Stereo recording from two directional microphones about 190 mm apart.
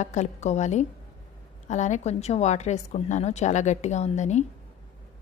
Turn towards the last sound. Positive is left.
turn(degrees=35)  # may be behind; listen again after turning